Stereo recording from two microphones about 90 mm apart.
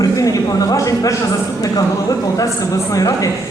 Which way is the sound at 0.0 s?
40° left (ahead or behind).